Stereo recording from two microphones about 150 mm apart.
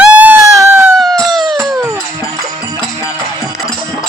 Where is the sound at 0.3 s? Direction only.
20° right (ahead or behind).